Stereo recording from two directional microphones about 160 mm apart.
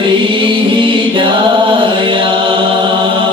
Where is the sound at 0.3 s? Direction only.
30° right (ahead or behind).